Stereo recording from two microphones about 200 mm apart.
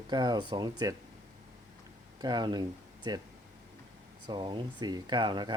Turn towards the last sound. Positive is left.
turn(degrees=-25)  # may be behind; listen again after turning